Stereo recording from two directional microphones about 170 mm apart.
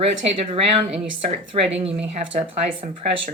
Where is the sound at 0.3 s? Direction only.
35° right (ahead or behind).